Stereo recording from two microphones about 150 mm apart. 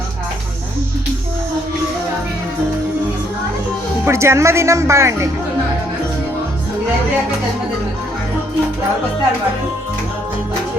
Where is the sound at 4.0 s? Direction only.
20° right (ahead or behind).